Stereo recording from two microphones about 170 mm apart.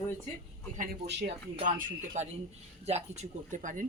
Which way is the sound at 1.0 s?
85° right.